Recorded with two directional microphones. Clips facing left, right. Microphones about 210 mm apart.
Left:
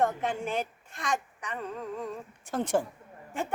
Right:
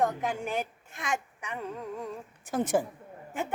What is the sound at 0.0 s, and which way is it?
A woman's voice, centre (ahead or behind).